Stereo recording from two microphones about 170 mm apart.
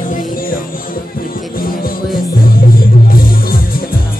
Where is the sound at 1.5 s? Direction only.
55° left (ahead or behind).